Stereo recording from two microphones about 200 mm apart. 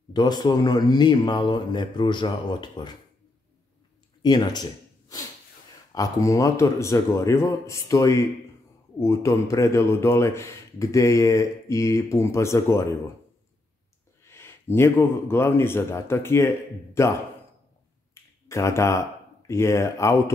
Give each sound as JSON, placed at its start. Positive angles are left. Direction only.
{"t": 0.1, "sound": "speech", "side_deg": 20}
{"t": 4.2, "sound": "speech", "side_deg": 20}
{"t": 14.2, "sound": "speech", "side_deg": 10}
{"t": 18.1, "sound": "speech", "side_deg": 15}